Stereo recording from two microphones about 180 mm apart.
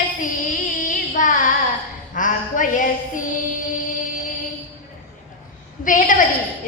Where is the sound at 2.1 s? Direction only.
45° left (ahead or behind).